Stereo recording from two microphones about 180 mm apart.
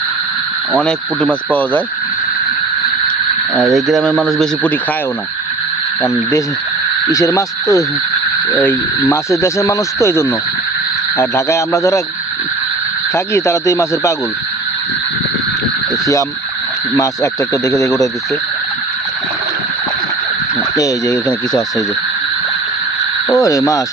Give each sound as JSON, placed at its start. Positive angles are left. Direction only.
{"t": 0.8, "sound": "speech", "side_deg": 5}
{"t": 3.6, "sound": "speech", "side_deg": 0}
{"t": 7.1, "sound": "speech", "side_deg": 20}
{"t": 13.1, "sound": "speech", "side_deg": 15}
{"t": 17.5, "sound": "speech", "side_deg": 20}
{"t": 20.7, "sound": "speech", "side_deg": 20}
{"t": 23.3, "sound": "speech", "side_deg": 20}